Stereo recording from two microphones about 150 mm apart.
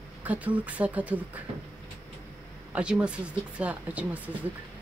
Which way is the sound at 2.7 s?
5° right (ahead or behind).